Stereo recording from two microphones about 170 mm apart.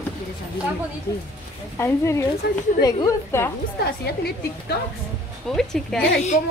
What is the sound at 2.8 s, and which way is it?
Speech, 20° left (ahead or behind).